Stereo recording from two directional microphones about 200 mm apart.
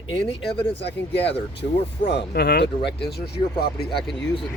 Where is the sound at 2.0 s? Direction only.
55° left (ahead or behind).